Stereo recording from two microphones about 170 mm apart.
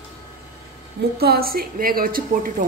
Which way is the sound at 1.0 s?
65° right (ahead or behind).